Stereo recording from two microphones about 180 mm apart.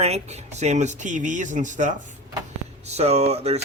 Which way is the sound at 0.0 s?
35° right (ahead or behind).